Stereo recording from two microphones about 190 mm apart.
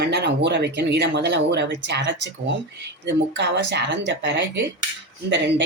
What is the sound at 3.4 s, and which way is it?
Speech, 65° right (ahead or behind).